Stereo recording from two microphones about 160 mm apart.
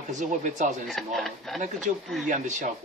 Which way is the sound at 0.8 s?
Centre (ahead or behind).